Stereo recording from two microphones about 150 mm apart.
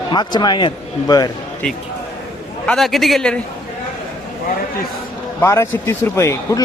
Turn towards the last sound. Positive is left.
turn(degrees=20)  # may be behind; listen again after turning